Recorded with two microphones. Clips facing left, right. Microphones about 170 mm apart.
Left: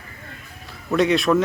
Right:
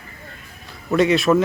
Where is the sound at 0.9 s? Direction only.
Centre (ahead or behind).